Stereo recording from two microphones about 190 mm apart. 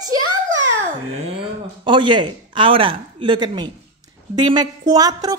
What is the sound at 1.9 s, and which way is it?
A woman's voice, 25° right (ahead or behind).